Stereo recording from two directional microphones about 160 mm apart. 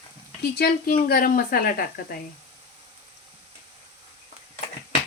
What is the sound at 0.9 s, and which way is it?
Speech, 65° left (ahead or behind).